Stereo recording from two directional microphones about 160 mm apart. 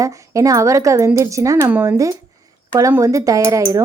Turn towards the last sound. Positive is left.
turn(degrees=-15)  # may be behind; listen again after turning